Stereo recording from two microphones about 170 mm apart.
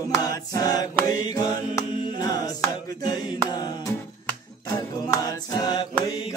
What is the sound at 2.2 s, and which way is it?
Mantra, 25° left (ahead or behind).